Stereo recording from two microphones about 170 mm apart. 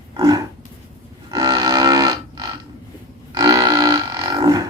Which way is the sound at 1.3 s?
20° right (ahead or behind).